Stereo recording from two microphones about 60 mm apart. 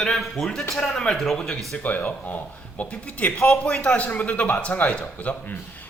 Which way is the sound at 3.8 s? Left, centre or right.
Left.